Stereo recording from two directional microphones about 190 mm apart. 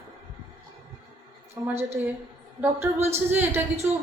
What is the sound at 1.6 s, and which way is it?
Speech, 15° right (ahead or behind).